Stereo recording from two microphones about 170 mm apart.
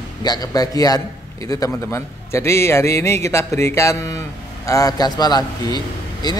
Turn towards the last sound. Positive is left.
turn(degrees=25)  # may be behind; listen again after turning